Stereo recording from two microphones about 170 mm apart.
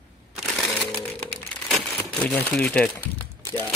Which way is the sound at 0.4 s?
Centre (ahead or behind).